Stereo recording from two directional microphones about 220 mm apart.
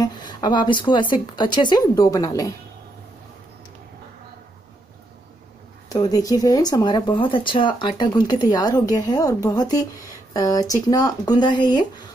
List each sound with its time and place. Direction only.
0.0 s a sound: 20° left (ahead or behind)
1.1 s speech: 20° left (ahead or behind)
5.9 s speech: 15° left (ahead or behind)